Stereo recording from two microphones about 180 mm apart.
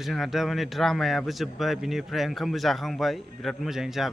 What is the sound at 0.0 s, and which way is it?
A man's voice, centre (ahead or behind).